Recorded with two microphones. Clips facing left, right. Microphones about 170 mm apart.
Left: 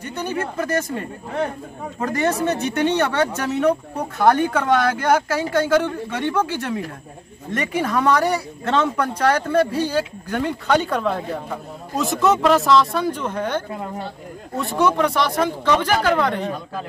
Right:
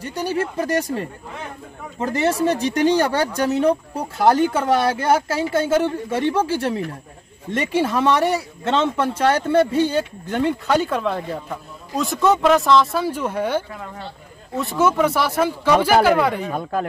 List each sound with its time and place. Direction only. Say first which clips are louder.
0.0 s speech: right 2 dB; 30° right (ahead or behind)
10.7 s speech: even; centre (ahead or behind)
13.9 s speech: left 5 dB; 45° left (ahead or behind)
14.6 s speech: right 1 dB; centre (ahead or behind)